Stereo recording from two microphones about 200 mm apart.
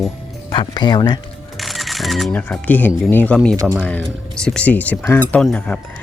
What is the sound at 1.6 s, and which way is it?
Speech, centre (ahead or behind).